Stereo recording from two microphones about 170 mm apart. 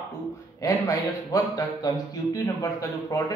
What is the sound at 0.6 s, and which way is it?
A man's voice, 20° left (ahead or behind).